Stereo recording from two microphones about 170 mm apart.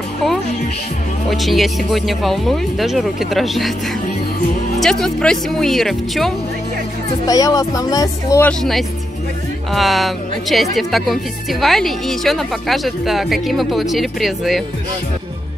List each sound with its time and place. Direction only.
1.3 s speech: centre (ahead or behind)
4.7 s speech: centre (ahead or behind)
7.2 s speech: 20° left (ahead or behind)
8.5 s speech: centre (ahead or behind)